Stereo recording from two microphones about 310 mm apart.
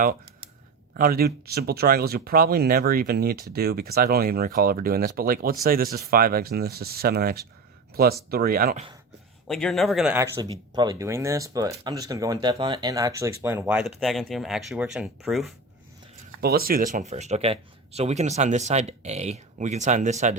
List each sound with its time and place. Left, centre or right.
0.9 s speech: right
9.5 s speech: centre
16.4 s speech: right